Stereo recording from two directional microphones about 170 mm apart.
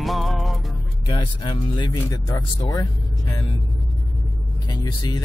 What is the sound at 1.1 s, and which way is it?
Speech, 25° left (ahead or behind).